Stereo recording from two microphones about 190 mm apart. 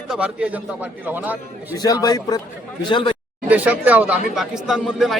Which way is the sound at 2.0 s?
20° left (ahead or behind).